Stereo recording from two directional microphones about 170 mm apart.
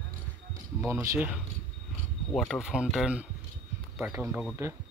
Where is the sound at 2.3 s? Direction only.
Centre (ahead or behind).